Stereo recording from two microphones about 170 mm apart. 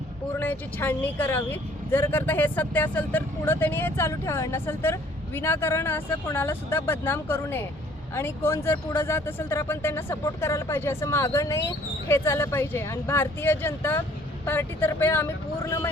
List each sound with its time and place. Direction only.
0.3 s a woman's voice: 10° left (ahead or behind)